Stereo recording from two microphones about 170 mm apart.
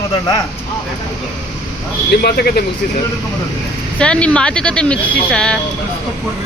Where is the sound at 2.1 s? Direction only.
65° left (ahead or behind).